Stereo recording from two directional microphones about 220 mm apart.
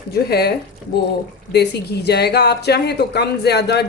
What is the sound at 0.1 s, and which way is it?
Speech, 45° left (ahead or behind).